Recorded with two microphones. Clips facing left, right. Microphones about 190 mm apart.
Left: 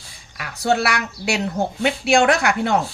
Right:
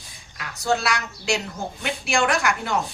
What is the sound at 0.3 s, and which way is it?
Speech, 60° left (ahead or behind).